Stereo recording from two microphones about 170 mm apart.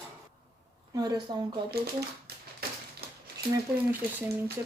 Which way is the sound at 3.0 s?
65° right (ahead or behind).